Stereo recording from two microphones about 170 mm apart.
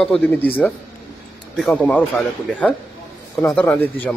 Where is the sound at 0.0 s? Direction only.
5° left (ahead or behind).